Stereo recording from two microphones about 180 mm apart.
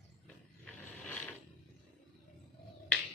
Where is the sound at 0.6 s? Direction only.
5° left (ahead or behind).